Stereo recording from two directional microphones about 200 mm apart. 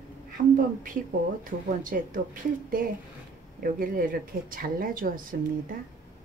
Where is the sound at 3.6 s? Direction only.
45° right (ahead or behind).